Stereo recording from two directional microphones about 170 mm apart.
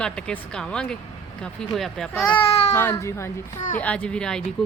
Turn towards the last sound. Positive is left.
turn(degrees=0)  # may be behind; listen again after turning